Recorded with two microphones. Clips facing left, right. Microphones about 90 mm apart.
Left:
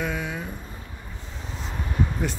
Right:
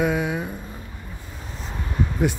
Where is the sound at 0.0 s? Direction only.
15° right (ahead or behind).